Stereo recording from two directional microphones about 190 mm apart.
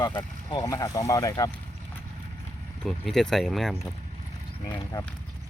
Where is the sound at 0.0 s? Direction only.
25° left (ahead or behind).